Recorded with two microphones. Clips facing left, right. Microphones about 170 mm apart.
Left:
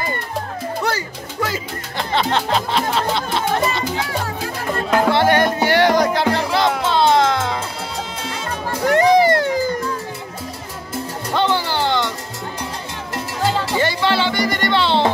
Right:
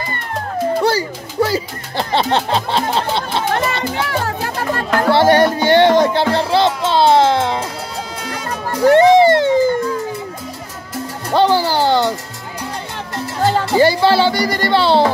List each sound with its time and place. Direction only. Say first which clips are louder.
0.8 s speech: right 6 dB; 30° right (ahead or behind)
3.7 s music: right 2 dB; 65° right (ahead or behind)
5.1 s music: right 4 dB; 30° right (ahead or behind)
8.8 s music: right 5 dB; 30° right (ahead or behind)
11.3 s music: right 6 dB; 35° right (ahead or behind)
13.5 s music: right 7 dB; 35° right (ahead or behind)